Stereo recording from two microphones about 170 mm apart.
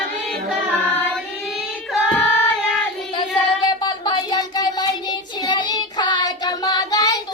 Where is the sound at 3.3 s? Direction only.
25° left (ahead or behind).